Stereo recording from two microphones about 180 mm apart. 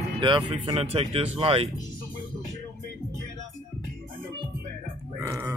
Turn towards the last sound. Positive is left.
turn(degrees=-15)  # may be behind; listen again after turning